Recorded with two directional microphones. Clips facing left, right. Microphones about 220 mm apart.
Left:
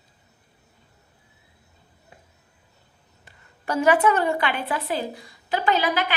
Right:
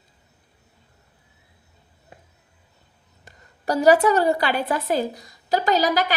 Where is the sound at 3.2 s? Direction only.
40° right (ahead or behind).